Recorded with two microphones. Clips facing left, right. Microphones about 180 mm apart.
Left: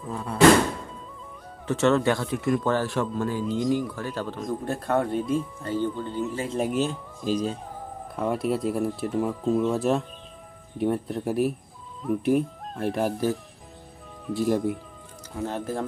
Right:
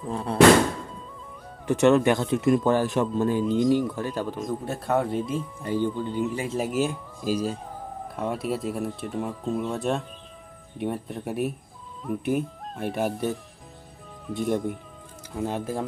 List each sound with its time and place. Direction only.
0.1 s a man's voice: 30° right (ahead or behind)
1.7 s a man's voice: 15° right (ahead or behind)
4.5 s speech: 5° right (ahead or behind)
5.6 s speech: 15° right (ahead or behind); by 14.8 s 5° left (ahead or behind)
15.4 s speech: 10° right (ahead or behind)